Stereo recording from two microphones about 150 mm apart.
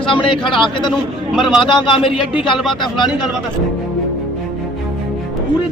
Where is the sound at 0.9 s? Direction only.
Centre (ahead or behind).